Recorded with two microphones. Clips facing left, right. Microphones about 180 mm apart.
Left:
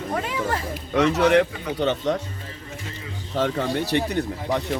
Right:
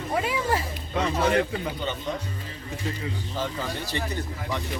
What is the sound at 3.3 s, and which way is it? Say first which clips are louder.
Speech: left 10 dB; 70° left (ahead or behind).